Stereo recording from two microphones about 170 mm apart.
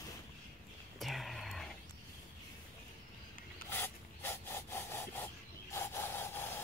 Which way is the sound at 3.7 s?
15° left (ahead or behind).